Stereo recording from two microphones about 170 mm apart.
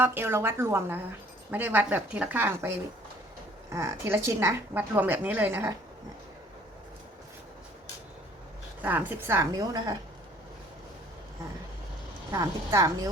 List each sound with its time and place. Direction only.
0.0 s a woman's voice: 10° right (ahead or behind)
8.8 s a woman's voice: 10° right (ahead or behind)
12.3 s a woman's voice: 20° right (ahead or behind)